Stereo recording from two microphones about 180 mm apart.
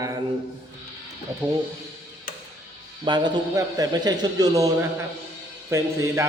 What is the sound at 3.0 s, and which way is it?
A man's voice, 25° right (ahead or behind).